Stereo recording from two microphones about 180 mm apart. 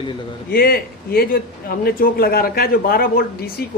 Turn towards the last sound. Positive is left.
turn(degrees=55)  # may be behind; listen again after turning